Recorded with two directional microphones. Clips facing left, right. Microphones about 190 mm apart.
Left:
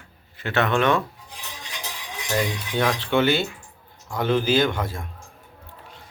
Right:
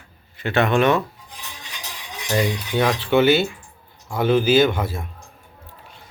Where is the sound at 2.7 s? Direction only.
10° right (ahead or behind).